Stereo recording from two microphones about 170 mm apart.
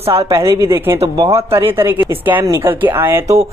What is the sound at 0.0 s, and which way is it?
Speech, 35° right (ahead or behind).